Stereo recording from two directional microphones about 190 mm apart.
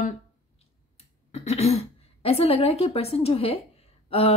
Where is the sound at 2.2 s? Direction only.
30° left (ahead or behind).